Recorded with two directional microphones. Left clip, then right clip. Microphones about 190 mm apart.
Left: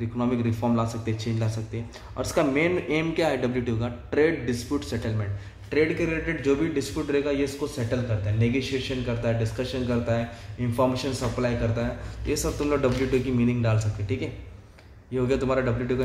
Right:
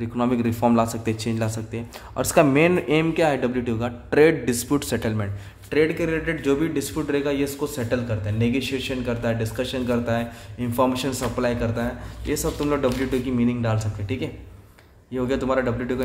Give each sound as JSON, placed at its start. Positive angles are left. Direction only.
{"t": 0.2, "sound": "a man's voice", "side_deg": -30}
{"t": 5.7, "sound": "a man's voice", "side_deg": -20}